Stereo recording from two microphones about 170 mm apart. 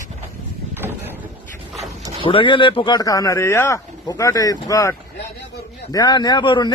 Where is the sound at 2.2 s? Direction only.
30° left (ahead or behind).